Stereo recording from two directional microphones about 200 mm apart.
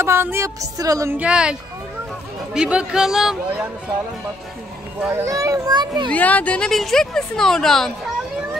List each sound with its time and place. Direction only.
0.0 s speech: 10° right (ahead or behind)
5.0 s speech: 15° right (ahead or behind)
6.0 s speech: 10° left (ahead or behind)